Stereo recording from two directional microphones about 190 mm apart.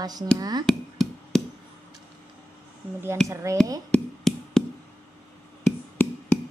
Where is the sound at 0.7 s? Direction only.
Centre (ahead or behind).